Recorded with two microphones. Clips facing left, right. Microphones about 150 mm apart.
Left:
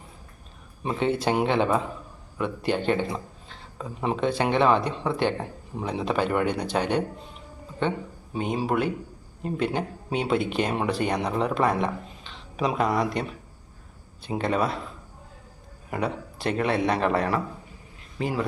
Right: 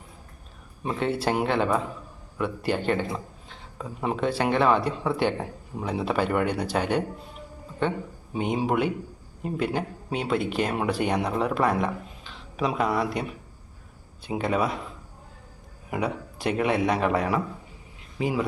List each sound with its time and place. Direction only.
0.9 s speech: 5° right (ahead or behind)
7.8 s a sound: 5° right (ahead or behind)
8.4 s speech: 15° right (ahead or behind)
15.9 s speech: 10° right (ahead or behind)